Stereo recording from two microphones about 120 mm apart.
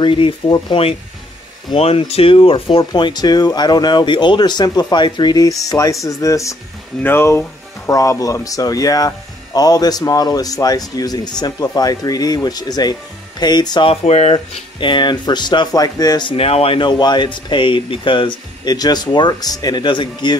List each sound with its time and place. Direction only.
0.0 s speech: 45° left (ahead or behind)
14.0 s speech: 65° left (ahead or behind)
14.5 s speech: 45° left (ahead or behind)